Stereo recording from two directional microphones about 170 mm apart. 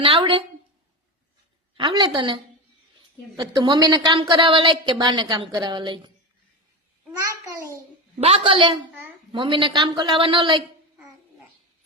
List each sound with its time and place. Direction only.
0.0 s a sound: 30° right (ahead or behind)
1.7 s a woman's voice: 30° right (ahead or behind)
8.2 s a woman's voice: 35° right (ahead or behind)